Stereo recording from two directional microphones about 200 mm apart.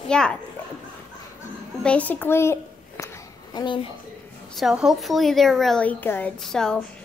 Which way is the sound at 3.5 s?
20° left (ahead or behind).